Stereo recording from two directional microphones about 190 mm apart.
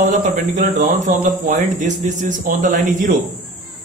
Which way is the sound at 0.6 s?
40° right (ahead or behind).